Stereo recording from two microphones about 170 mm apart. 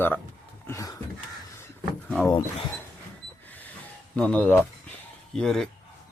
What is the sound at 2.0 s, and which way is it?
Speech, centre (ahead or behind).